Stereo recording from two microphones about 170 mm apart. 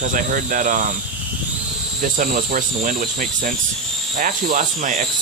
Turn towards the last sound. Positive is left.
turn(degrees=-50)  # may be behind; listen again after turning